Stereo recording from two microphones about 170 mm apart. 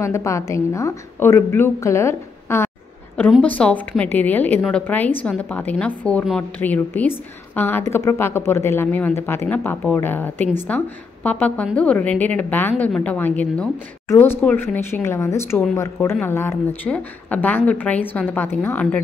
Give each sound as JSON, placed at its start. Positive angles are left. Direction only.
{"t": 0.0, "sound": "a woman's voice", "side_deg": 15}